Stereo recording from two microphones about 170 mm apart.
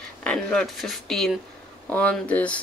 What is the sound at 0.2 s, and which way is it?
Speech, 5° left (ahead or behind).